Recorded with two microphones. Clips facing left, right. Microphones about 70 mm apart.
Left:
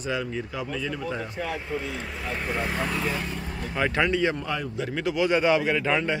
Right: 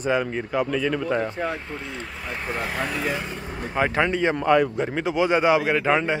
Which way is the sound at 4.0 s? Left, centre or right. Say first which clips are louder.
Right 1 dB; right.